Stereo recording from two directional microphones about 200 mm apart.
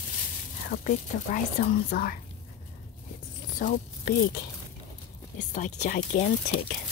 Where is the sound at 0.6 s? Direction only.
40° left (ahead or behind).